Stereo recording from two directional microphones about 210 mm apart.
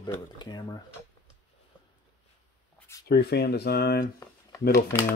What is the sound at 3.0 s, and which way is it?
Speech, 50° left (ahead or behind).